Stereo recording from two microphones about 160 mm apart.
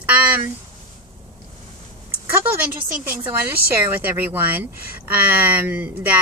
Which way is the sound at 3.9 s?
10° right (ahead or behind).